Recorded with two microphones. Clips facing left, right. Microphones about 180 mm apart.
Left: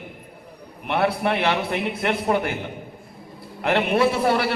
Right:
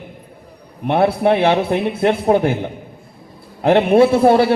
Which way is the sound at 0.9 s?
25° right (ahead or behind).